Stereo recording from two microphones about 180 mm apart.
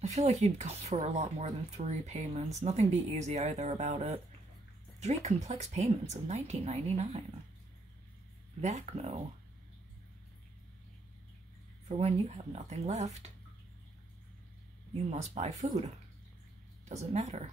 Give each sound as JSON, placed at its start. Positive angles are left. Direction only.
{"t": 0.0, "sound": "speech", "side_deg": -40}
{"t": 8.5, "sound": "speech", "side_deg": -40}
{"t": 11.9, "sound": "speech", "side_deg": -40}
{"t": 15.0, "sound": "speech", "side_deg": -40}
{"t": 16.8, "sound": "speech", "side_deg": -40}